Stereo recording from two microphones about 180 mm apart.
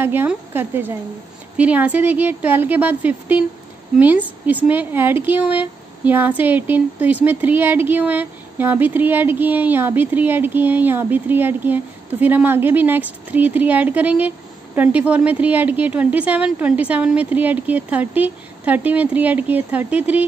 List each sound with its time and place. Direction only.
0.0 s speech: 10° right (ahead or behind)